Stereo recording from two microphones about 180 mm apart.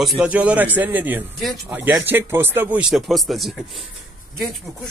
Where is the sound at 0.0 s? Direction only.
5° right (ahead or behind).